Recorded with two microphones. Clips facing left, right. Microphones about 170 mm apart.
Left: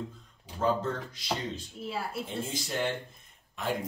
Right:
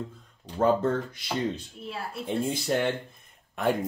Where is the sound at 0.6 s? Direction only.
55° right (ahead or behind).